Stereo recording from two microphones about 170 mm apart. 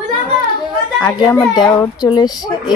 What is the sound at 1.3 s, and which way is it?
A woman's voice, 25° left (ahead or behind).